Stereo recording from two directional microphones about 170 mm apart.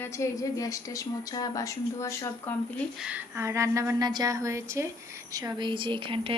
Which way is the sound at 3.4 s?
15° right (ahead or behind).